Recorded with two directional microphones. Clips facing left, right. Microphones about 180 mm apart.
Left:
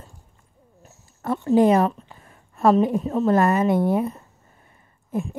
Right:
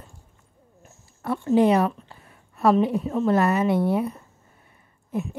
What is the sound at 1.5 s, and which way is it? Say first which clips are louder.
A woman's voice: left 2 dB; 45° left (ahead or behind).